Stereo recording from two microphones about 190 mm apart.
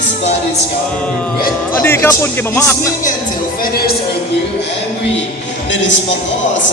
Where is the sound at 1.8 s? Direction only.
10° left (ahead or behind).